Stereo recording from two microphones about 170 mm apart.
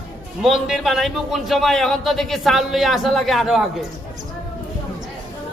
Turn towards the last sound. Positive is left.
turn(degrees=0)  # may be behind; listen again after turning